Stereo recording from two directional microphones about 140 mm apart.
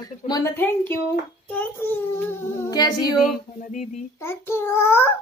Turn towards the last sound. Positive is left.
turn(degrees=20)  # may be behind; listen again after turning